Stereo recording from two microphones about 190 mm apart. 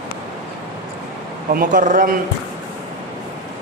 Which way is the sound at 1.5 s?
45° right (ahead or behind).